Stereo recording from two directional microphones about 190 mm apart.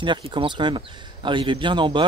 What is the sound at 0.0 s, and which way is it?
Speech, 25° right (ahead or behind).